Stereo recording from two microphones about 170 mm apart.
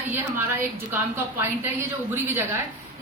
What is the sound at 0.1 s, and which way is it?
A woman's voice, 15° right (ahead or behind).